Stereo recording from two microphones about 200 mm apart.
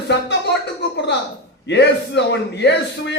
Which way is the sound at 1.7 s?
60° left (ahead or behind).